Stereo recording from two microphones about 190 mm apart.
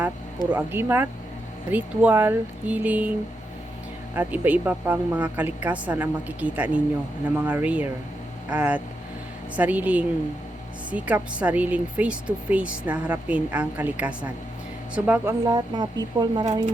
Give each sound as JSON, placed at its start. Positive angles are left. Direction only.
{"t": 0.5, "sound": "speech", "side_deg": -10}
{"t": 4.1, "sound": "speech", "side_deg": -10}
{"t": 15.4, "sound": "speech", "side_deg": -20}